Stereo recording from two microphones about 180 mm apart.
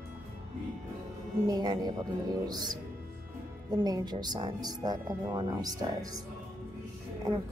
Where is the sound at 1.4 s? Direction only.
25° right (ahead or behind).